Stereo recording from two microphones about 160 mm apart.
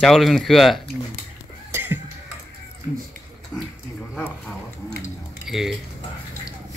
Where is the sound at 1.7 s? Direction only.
15° right (ahead or behind).